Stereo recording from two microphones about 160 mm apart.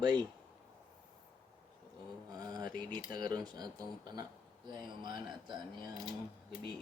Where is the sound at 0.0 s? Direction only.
25° right (ahead or behind).